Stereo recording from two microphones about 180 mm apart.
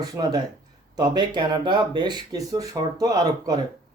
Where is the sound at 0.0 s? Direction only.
20° right (ahead or behind).